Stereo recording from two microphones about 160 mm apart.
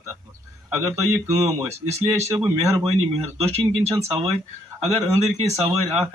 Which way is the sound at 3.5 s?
40° right (ahead or behind).